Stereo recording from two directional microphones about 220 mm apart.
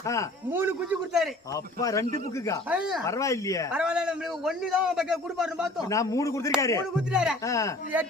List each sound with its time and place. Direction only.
0.0 s speech: 15° left (ahead or behind)
0.5 s a man's voice: 10° right (ahead or behind)
1.5 s speech: 15° left (ahead or behind)
2.6 s a man's voice: 5° right (ahead or behind)
3.1 s speech: 15° left (ahead or behind)
3.7 s a man's voice: 5° right (ahead or behind)
5.9 s speech: 15° left (ahead or behind)
6.9 s a man's voice: 5° right (ahead or behind)
7.4 s speech: 15° left (ahead or behind)